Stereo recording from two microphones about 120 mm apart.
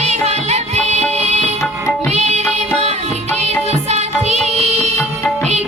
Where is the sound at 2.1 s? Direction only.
70° right (ahead or behind).